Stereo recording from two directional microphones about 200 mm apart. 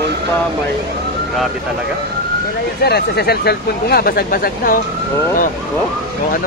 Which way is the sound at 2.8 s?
55° left (ahead or behind).